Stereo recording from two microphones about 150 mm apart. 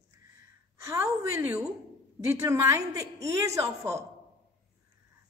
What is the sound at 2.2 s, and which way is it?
A woman's voice, 20° right (ahead or behind).